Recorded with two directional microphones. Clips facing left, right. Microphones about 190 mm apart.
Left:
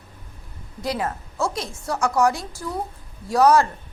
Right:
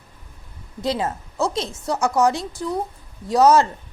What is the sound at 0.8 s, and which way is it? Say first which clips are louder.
A woman's voice: right 3 dB; 25° right (ahead or behind).